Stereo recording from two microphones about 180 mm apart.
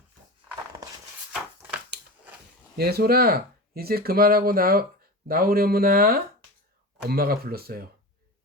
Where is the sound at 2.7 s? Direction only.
60° right (ahead or behind).